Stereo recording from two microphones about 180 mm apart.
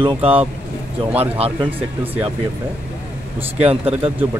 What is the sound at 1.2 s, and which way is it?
Speech, 35° right (ahead or behind).